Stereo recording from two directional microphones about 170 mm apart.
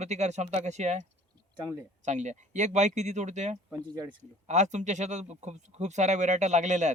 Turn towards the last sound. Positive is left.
turn(degrees=-45)  # may be behind; listen again after turning